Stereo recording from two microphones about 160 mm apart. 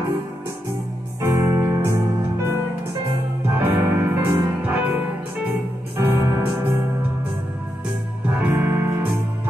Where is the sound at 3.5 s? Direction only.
15° right (ahead or behind).